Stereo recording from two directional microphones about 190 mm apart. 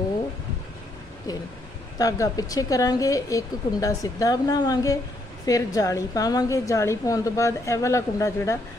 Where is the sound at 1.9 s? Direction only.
20° left (ahead or behind).